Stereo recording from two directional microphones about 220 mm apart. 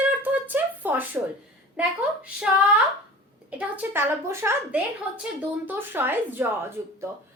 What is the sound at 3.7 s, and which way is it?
Speech, 10° right (ahead or behind).